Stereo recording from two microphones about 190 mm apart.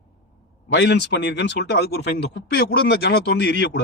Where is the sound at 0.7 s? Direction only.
65° left (ahead or behind).